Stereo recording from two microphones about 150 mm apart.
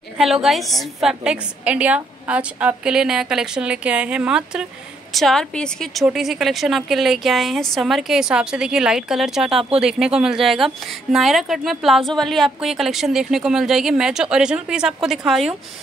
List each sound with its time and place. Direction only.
0.2 s speech: centre (ahead or behind)